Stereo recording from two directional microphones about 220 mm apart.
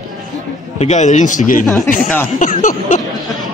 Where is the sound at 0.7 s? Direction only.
30° left (ahead or behind).